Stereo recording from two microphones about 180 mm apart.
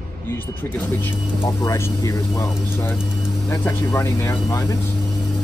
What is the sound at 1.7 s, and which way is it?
Speech, 15° left (ahead or behind).